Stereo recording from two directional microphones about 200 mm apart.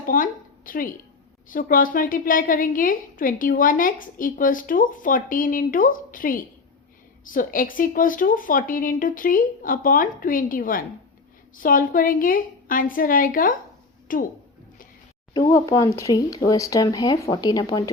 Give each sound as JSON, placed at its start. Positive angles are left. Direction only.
{"t": 0.0, "sound": "a woman's voice", "side_deg": 45}
{"t": 15.3, "sound": "speech", "side_deg": 20}